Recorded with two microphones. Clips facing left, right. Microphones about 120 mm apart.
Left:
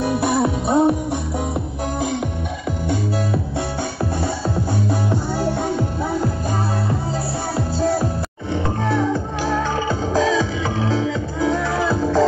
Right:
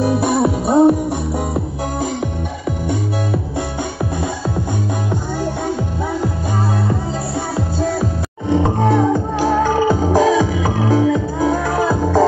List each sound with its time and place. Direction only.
0.0 s music: centre (ahead or behind)
8.6 s music: 15° right (ahead or behind)